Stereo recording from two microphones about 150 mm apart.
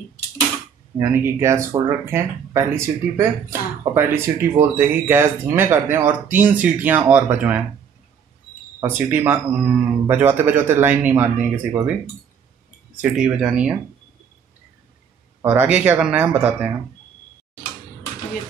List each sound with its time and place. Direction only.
0.9 s speech: 20° right (ahead or behind)
8.7 s speech: 15° right (ahead or behind)
13.0 s speech: 5° right (ahead or behind)
15.4 s speech: 10° right (ahead or behind)